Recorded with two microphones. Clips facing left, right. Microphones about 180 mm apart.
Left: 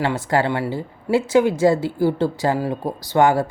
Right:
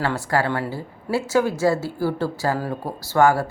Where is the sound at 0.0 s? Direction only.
20° left (ahead or behind).